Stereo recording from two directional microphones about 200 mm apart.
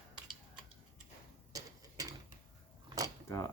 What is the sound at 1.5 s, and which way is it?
Mechanisms, 15° right (ahead or behind).